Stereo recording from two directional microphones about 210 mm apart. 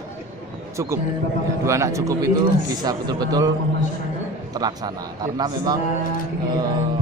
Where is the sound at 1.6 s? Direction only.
15° right (ahead or behind).